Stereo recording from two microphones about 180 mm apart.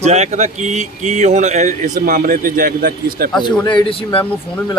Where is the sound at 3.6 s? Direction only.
30° left (ahead or behind).